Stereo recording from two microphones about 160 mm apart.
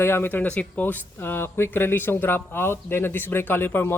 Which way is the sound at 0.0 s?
15° left (ahead or behind).